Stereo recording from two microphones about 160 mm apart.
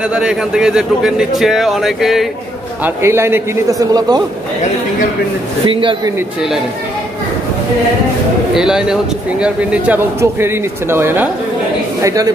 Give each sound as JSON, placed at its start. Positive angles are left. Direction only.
{"t": 0.1, "sound": "speech", "side_deg": -5}
{"t": 2.8, "sound": "a man's voice", "side_deg": -15}
{"t": 5.7, "sound": "speech", "side_deg": -30}
{"t": 8.5, "sound": "a man's voice", "side_deg": -5}